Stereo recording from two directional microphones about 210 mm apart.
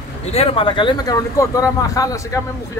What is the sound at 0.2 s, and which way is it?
Speech, 30° left (ahead or behind).